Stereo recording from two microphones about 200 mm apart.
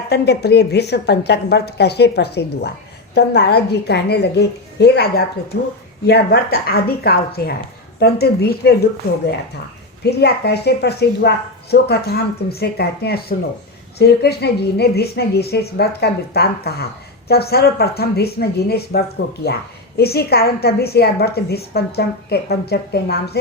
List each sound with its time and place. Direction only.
0.1 s a woman's voice: 55° left (ahead or behind)
10.0 s a woman's voice: 55° left (ahead or behind)